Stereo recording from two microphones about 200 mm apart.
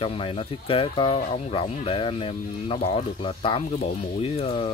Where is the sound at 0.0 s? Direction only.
25° left (ahead or behind).